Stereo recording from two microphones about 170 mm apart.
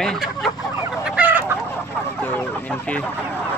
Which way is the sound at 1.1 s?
10° right (ahead or behind).